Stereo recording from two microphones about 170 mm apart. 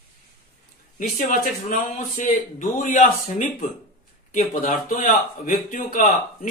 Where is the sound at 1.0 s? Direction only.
50° left (ahead or behind).